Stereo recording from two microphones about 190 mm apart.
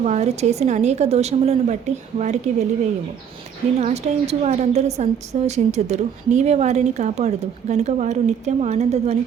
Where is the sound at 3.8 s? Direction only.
35° right (ahead or behind).